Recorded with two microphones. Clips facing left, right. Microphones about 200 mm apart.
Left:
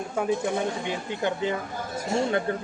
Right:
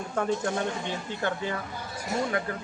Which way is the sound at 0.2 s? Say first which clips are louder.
Left 2 dB; 5° left (ahead or behind).